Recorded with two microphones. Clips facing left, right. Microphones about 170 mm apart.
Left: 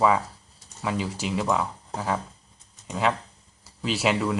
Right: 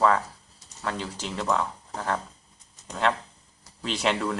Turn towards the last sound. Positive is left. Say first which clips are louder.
# left 2 dB
turn(degrees=5)  # may be behind; listen again after turning